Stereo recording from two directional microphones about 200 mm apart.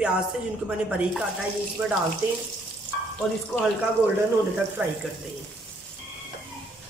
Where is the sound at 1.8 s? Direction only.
5° right (ahead or behind).